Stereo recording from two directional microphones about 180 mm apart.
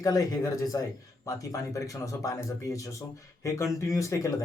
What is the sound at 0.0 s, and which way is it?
Speech, 20° left (ahead or behind).